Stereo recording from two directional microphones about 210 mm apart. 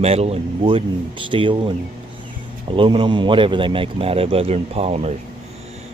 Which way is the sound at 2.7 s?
25° right (ahead or behind).